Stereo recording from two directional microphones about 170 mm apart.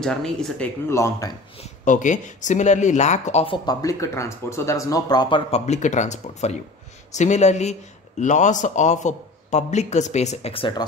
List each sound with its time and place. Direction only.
0.0 s speech: 5° left (ahead or behind)
0.8 s speech: 15° left (ahead or behind)
1.6 s a man's voice: 45° left (ahead or behind)
3.6 s speech: 20° left (ahead or behind)
5.5 s a man's voice: 45° left (ahead or behind)